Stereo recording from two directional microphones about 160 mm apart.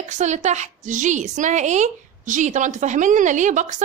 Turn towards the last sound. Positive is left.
turn(degrees=-50)  # may be behind; listen again after turning